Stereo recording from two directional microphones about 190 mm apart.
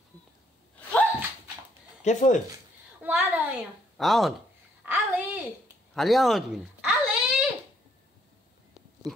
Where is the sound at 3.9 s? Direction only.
Centre (ahead or behind).